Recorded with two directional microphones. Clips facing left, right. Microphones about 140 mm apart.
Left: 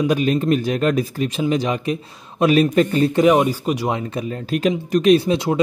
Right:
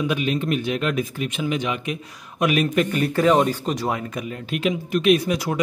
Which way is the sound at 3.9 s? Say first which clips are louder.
Left 3 dB; 35° left (ahead or behind).